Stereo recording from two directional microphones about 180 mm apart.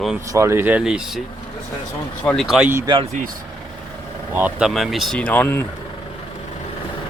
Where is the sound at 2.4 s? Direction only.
5° right (ahead or behind).